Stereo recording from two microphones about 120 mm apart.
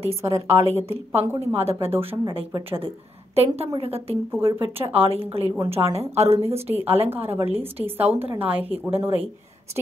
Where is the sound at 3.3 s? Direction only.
60° right (ahead or behind).